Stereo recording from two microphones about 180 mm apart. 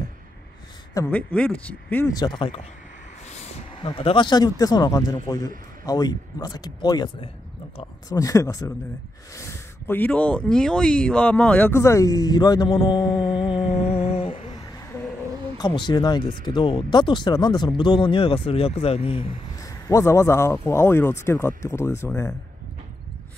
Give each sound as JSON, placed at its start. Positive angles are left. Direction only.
{"t": 0.9, "sound": "speech", "side_deg": 10}
{"t": 2.1, "sound": "speech", "side_deg": 25}
{"t": 3.3, "sound": "speech", "side_deg": 35}
{"t": 8.1, "sound": "speech", "side_deg": 20}
{"t": 13.4, "sound": "humming", "side_deg": 35}
{"t": 15.5, "sound": "speech", "side_deg": 25}
{"t": 19.6, "sound": "speech", "side_deg": 15}